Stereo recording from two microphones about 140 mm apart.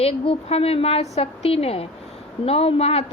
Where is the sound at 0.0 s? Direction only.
45° left (ahead or behind).